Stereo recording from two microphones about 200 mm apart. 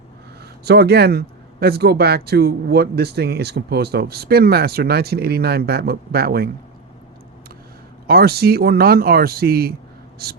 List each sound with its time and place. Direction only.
0.6 s speech: 55° right (ahead or behind)
8.0 s speech: 50° right (ahead or behind)